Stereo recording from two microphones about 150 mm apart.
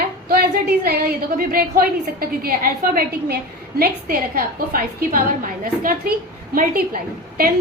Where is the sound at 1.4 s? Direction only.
70° right (ahead or behind).